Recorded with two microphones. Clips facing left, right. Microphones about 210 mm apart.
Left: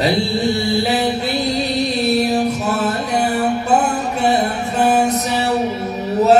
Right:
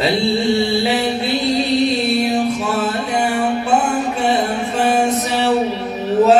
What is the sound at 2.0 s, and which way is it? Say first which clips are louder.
Music: left 1 dB; 40° left (ahead or behind).